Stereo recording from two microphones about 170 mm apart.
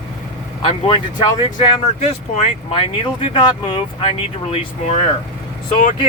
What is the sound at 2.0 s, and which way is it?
Speech, 45° left (ahead or behind).